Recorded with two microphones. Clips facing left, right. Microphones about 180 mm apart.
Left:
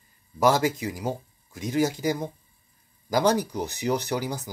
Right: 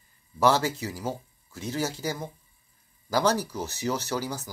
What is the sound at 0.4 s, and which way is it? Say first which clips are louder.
Speech: left 2 dB; 10° left (ahead or behind).